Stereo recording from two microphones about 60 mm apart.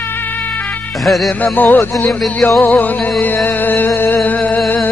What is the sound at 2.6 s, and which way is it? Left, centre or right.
Music, left.